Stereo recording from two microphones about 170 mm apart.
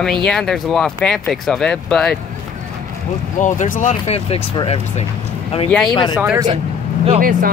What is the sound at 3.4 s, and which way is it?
Speech, 50° left (ahead or behind).